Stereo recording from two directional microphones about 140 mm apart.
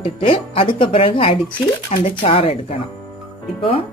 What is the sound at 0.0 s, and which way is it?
Speech, 40° left (ahead or behind).